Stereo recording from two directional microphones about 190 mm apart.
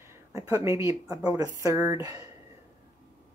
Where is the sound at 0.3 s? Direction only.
15° right (ahead or behind).